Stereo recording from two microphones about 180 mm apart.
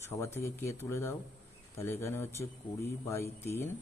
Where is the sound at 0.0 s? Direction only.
15° left (ahead or behind).